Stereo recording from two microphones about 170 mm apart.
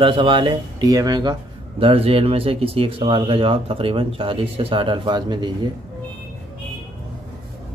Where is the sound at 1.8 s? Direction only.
35° right (ahead or behind).